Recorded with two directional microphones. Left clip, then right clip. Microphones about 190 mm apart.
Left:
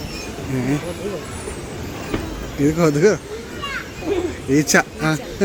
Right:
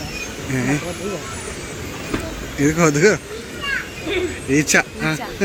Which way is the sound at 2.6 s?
5° left (ahead or behind).